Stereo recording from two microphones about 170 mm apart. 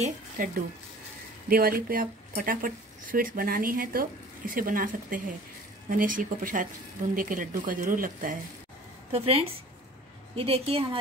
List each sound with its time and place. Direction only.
0.0 s speech: 55° right (ahead or behind)
9.1 s a woman's voice: 35° right (ahead or behind)